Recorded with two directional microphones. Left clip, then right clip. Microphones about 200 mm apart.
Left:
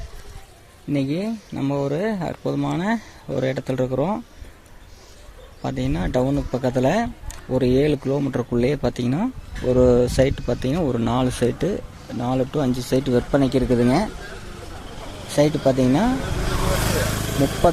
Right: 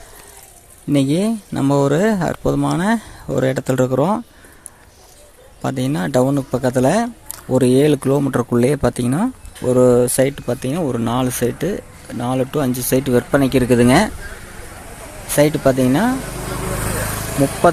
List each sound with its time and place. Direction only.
0.9 s speech: 30° right (ahead or behind)
5.6 s speech: 20° right (ahead or behind)
15.4 s speech: 10° right (ahead or behind)
16.6 s vehicle: 45° left (ahead or behind)